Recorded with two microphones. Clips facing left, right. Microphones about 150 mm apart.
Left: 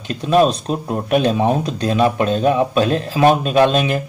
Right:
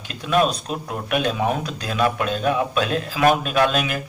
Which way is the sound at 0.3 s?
30° left (ahead or behind).